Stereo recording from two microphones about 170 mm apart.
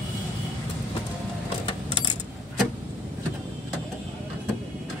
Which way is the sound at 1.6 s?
30° left (ahead or behind).